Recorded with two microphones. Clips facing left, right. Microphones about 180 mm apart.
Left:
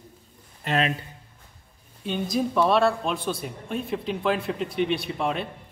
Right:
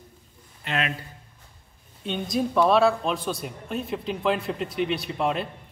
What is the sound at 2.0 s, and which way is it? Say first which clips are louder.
A man's voice: left 1 dB; centre (ahead or behind).